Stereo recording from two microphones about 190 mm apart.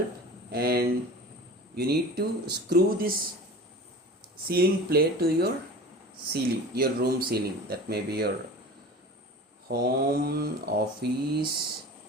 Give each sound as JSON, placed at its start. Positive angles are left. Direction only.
{"t": 0.5, "sound": "speech", "side_deg": -55}
{"t": 4.4, "sound": "speech", "side_deg": -50}
{"t": 9.6, "sound": "speech", "side_deg": -50}